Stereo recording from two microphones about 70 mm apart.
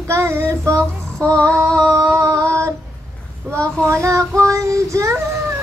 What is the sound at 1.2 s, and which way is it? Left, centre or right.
Female singing, centre.